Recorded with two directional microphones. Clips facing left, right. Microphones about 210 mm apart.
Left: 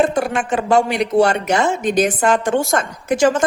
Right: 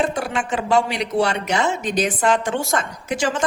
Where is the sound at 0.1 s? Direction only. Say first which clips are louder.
Left 5 dB; 50° left (ahead or behind).